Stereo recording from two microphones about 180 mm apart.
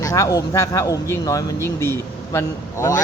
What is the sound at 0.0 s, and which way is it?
A man's voice, 20° left (ahead or behind).